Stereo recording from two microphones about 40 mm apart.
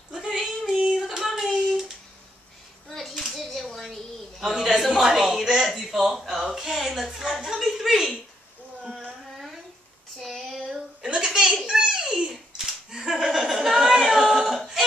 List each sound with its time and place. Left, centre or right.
0.1 s female singing: centre
0.7 s child singing: centre
1.0 s child singing: centre
3.0 s clapping: centre
3.4 s a sound: centre
5.8 s a woman's voice: centre
7.9 s a sound: centre
10.1 s child singing: centre
10.7 s a sound: centre